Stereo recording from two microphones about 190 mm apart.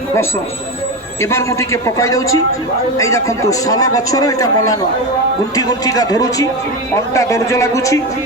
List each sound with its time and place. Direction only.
1.2 s a man's voice: 15° left (ahead or behind)